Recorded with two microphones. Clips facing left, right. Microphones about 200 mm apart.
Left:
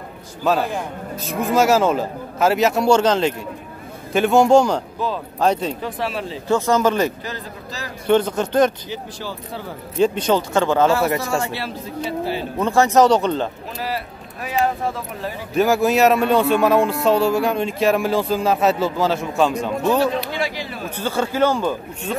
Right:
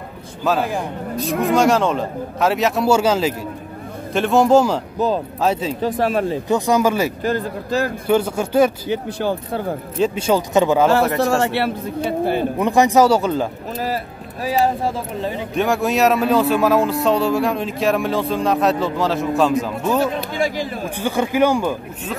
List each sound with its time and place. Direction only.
0.4 s speech: centre (ahead or behind)
5.8 s speech: 40° right (ahead or behind)
6.5 s speech: 15° right (ahead or behind)
7.2 s speech: 50° right (ahead or behind)
8.1 s speech: 10° right (ahead or behind)
8.8 s speech: 55° right (ahead or behind)
9.9 s speech: 5° right (ahead or behind)
11.1 s a man's voice: 65° right (ahead or behind)
12.5 s speech: 15° right (ahead or behind)
13.8 s speech: 40° right (ahead or behind)
15.5 s speech: centre (ahead or behind)
20.2 s speech: 45° right (ahead or behind)
20.9 s speech: 15° right (ahead or behind)